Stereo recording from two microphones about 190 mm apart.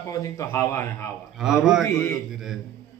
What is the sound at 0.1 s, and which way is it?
Speech, 15° left (ahead or behind).